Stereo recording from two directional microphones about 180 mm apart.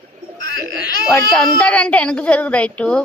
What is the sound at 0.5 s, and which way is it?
Speech, 20° left (ahead or behind).